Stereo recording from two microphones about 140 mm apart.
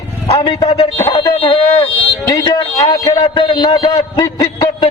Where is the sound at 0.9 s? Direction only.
25° left (ahead or behind).